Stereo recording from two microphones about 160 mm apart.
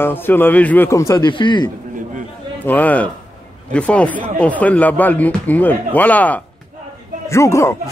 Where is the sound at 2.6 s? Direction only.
10° left (ahead or behind).